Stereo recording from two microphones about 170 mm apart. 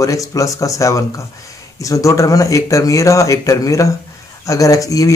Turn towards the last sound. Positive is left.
turn(degrees=20)  # may be behind; listen again after turning